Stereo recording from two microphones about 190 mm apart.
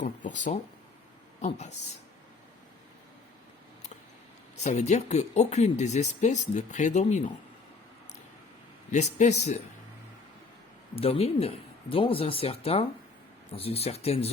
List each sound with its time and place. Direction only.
0.0 s speech: 40° left (ahead or behind)
4.5 s speech: 35° left (ahead or behind)
8.9 s speech: 35° left (ahead or behind)
10.9 s speech: 30° left (ahead or behind)